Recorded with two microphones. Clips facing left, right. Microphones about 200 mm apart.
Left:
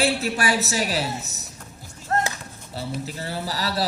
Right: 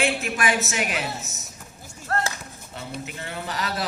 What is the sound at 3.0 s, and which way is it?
Speech, 35° left (ahead or behind).